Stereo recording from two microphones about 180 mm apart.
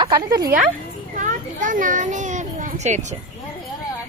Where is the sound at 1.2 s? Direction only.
45° right (ahead or behind).